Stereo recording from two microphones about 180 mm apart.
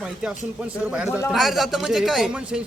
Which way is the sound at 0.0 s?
5° right (ahead or behind).